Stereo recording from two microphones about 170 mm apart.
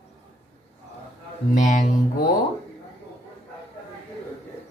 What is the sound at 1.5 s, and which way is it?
Mantra, 45° left (ahead or behind).